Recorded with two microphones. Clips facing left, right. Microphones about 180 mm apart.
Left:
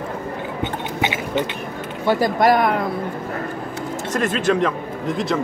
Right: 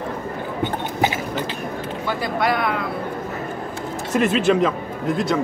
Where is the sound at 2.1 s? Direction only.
40° left (ahead or behind).